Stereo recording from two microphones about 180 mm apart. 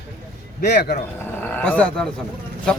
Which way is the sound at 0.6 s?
65° left (ahead or behind).